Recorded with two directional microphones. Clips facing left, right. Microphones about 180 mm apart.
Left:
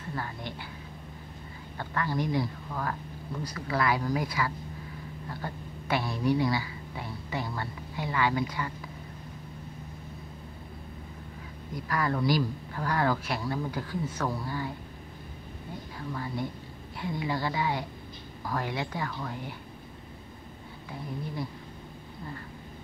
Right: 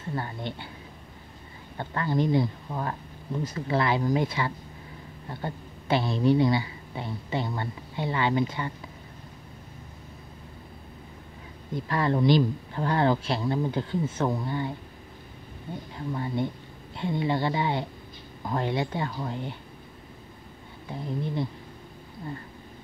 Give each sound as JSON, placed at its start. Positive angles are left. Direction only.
{"t": 0.1, "sound": "a woman's voice", "side_deg": -25}
{"t": 1.8, "sound": "a woman's voice", "side_deg": -25}
{"t": 11.7, "sound": "a woman's voice", "side_deg": -25}
{"t": 16.1, "sound": "a woman's voice", "side_deg": -25}